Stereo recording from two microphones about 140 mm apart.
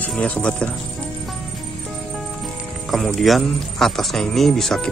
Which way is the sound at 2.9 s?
Centre (ahead or behind).